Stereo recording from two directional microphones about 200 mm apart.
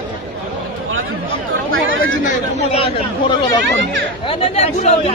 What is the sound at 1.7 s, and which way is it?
Chatter, 85° right.